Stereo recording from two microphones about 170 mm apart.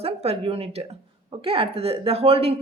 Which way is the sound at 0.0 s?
35° right (ahead or behind).